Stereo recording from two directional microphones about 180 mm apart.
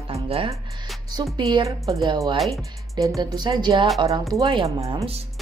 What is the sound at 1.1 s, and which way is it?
Speech, 25° right (ahead or behind).